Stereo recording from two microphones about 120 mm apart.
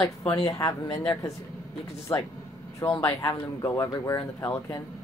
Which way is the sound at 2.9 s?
25° left (ahead or behind).